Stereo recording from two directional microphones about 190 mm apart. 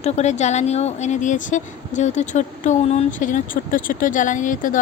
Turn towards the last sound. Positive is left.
turn(degrees=45)  # may be behind; listen again after turning